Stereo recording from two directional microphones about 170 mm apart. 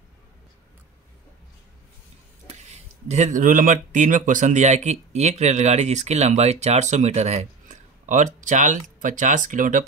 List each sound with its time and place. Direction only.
2.7 s speech: 40° right (ahead or behind)